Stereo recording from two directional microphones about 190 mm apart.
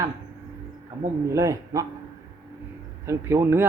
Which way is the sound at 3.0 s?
15° right (ahead or behind).